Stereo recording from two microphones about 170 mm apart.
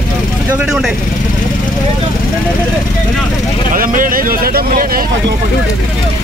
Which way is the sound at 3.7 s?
55° right (ahead or behind).